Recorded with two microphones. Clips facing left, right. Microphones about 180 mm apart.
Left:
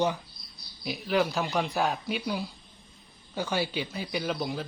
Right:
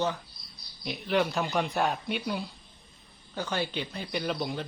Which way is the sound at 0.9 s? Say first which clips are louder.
Left 1 dB; centre (ahead or behind).